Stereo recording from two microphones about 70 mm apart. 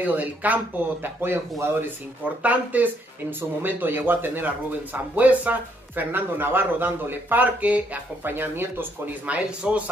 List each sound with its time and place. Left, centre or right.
0.0 s speech: right
1.0 s speech: right
2.2 s speech: right
8.2 s speech: right